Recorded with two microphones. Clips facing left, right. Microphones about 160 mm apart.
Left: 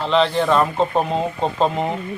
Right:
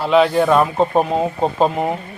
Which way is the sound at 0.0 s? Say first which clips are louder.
Right 4 dB; 10° right (ahead or behind).